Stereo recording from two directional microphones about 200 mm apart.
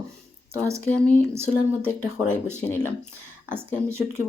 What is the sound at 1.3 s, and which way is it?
Speech, 10° right (ahead or behind).